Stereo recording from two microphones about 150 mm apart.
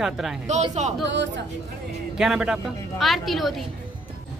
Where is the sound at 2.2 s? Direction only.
5° right (ahead or behind).